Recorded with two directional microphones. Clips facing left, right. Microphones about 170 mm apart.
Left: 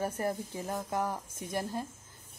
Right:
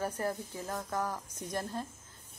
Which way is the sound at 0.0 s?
15° left (ahead or behind).